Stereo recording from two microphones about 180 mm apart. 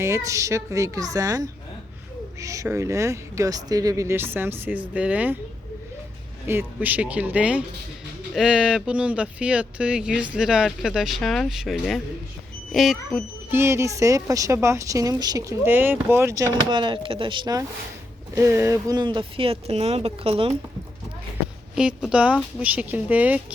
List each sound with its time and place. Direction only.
0.0 s a woman's voice: 15° right (ahead or behind)
6.5 s a woman's voice: 10° right (ahead or behind)
13.5 s a woman's voice: 15° right (ahead or behind); by 20.6 s 35° right (ahead or behind)
21.8 s a woman's voice: 5° right (ahead or behind)